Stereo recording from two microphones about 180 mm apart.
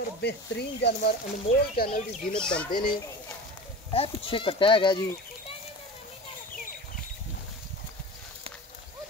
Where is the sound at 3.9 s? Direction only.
30° left (ahead or behind).